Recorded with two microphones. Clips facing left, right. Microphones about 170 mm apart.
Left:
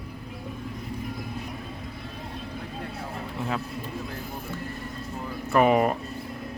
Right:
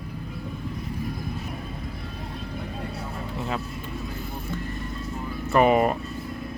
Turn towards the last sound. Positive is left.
turn(degrees=0)  # may be behind; listen again after turning